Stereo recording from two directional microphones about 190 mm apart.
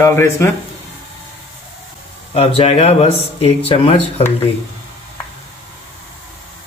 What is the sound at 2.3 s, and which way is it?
Speech, 30° left (ahead or behind).